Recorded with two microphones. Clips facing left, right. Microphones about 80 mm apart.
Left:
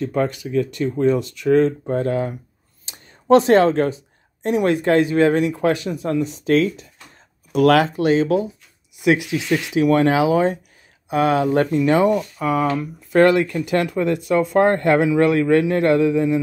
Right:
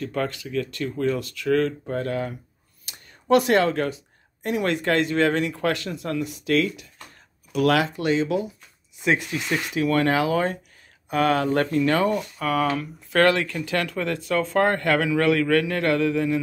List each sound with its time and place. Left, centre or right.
0.0 s speech: left
6.3 s speech: left
7.5 s speech: left
9.5 s speech: centre